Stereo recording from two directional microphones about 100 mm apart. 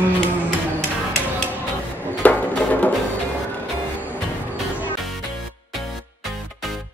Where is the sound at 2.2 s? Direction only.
15° left (ahead or behind).